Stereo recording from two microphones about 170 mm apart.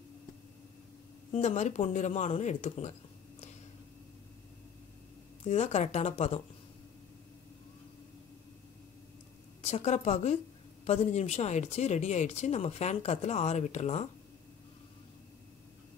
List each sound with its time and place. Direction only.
1.3 s speech: 40° left (ahead or behind)
5.4 s speech: 40° left (ahead or behind)
9.6 s a woman's voice: 40° left (ahead or behind)